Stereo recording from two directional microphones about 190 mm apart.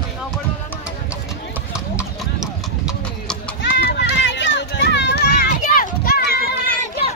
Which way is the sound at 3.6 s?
60° left (ahead or behind).